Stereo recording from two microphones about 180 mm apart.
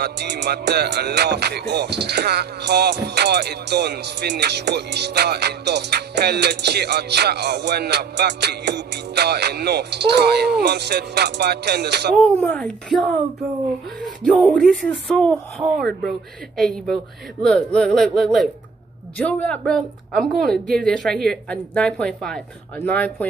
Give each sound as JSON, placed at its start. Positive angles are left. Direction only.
{"t": 0.0, "sound": "music", "side_deg": -65}
{"t": 12.2, "sound": "speech", "side_deg": 10}
{"t": 14.2, "sound": "a woman's voice", "side_deg": 5}
{"t": 16.5, "sound": "a woman's voice", "side_deg": 0}